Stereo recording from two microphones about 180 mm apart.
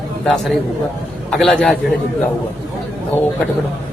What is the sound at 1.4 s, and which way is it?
Speech, 5° left (ahead or behind).